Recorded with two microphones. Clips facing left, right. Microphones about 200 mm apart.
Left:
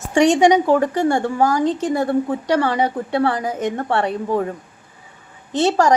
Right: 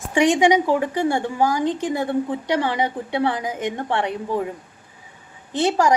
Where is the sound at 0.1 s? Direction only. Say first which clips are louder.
Left 3 dB; 45° left (ahead or behind).